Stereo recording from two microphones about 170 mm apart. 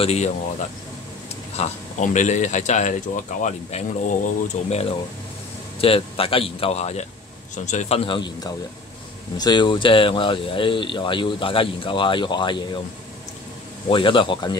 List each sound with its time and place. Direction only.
0.0 s speech: 40° left (ahead or behind)
13.8 s speech: 30° left (ahead or behind)